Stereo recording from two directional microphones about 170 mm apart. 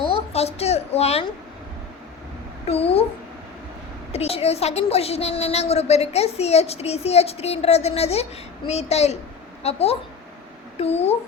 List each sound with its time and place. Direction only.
0.0 s a woman's voice: 35° left (ahead or behind)
2.6 s a woman's voice: 35° left (ahead or behind)
4.1 s a woman's voice: 35° left (ahead or behind)